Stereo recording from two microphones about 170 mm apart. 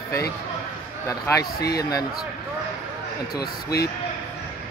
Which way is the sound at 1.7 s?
20° left (ahead or behind).